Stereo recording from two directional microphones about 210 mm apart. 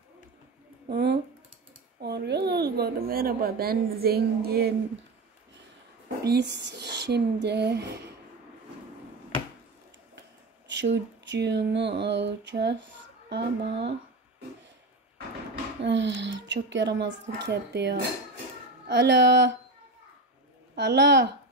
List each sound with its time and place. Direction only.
0.8 s a woman's voice: 50° right (ahead or behind)
6.2 s speech: 55° right (ahead or behind)
10.7 s a woman's voice: 60° right (ahead or behind)
15.8 s a woman's voice: 55° right (ahead or behind)
20.7 s speech: 50° right (ahead or behind)